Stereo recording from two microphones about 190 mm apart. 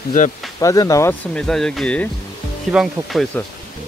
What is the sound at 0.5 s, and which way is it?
Speech, 15° left (ahead or behind).